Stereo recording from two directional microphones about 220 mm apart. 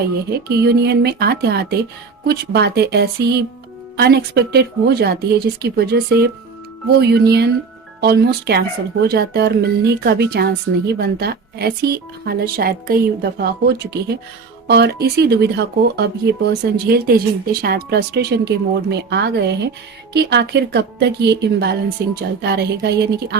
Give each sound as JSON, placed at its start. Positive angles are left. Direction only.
{"t": 0.3, "sound": "speech", "side_deg": -45}